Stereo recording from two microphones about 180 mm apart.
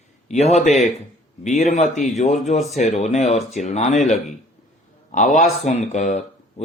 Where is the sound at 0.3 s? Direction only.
35° left (ahead or behind).